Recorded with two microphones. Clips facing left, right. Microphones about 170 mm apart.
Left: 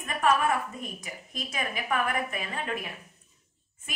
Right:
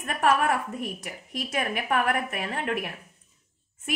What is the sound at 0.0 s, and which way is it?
A woman's voice, 65° right (ahead or behind).